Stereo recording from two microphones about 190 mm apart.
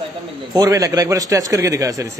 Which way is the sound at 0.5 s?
20° right (ahead or behind).